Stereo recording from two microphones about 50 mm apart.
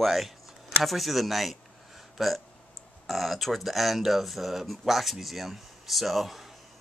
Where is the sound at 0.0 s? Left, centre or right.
Centre.